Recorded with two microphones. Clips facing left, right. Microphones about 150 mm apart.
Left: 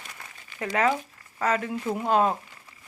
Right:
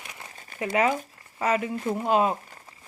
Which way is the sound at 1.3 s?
10° right (ahead or behind).